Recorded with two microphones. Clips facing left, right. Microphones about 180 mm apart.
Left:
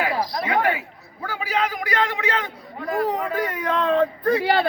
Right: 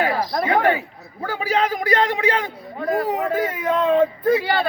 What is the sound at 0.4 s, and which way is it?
A man's voice, 35° right (ahead or behind).